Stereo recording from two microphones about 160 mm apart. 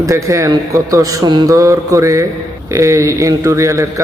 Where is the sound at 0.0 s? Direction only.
20° right (ahead or behind).